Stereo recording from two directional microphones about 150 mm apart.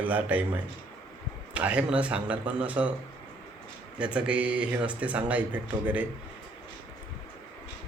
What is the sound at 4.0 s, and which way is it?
Speech, 5° right (ahead or behind).